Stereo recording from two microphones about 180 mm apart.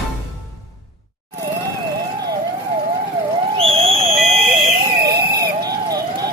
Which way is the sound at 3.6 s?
30° right (ahead or behind).